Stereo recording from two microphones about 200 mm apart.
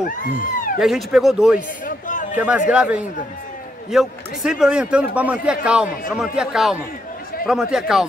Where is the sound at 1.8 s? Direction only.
40° left (ahead or behind).